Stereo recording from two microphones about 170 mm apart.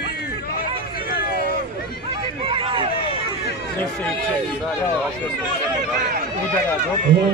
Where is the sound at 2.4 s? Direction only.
30° right (ahead or behind).